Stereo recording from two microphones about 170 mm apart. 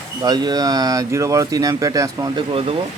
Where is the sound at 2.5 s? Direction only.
35° right (ahead or behind).